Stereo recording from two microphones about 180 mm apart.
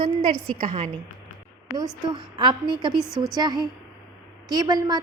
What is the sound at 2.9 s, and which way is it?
Speech, centre (ahead or behind).